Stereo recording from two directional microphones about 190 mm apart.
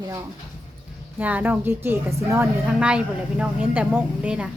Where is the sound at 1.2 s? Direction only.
10° right (ahead or behind).